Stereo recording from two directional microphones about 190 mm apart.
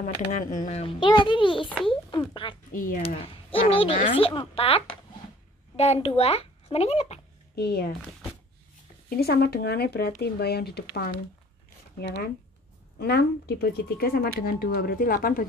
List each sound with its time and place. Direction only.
0.0 s speech: 40° left (ahead or behind); by 2.2 s 25° left (ahead or behind)
2.7 s speech: 45° left (ahead or behind)
3.3 s a child's voice: 30° left (ahead or behind)
7.5 s speech: 55° left (ahead or behind)
9.1 s speech: 55° left (ahead or behind)